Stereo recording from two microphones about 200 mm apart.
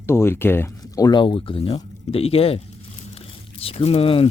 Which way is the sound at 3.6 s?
30° left (ahead or behind).